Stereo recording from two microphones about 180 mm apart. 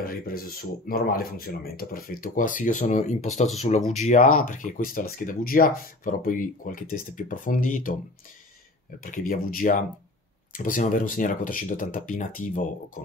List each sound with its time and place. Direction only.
0.0 s speech: 55° left (ahead or behind)
9.0 s speech: 50° left (ahead or behind)